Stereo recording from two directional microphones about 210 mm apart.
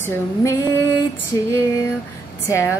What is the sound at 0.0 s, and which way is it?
Speech, 15° left (ahead or behind).